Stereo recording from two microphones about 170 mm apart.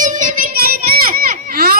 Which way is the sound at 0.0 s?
50° right (ahead or behind).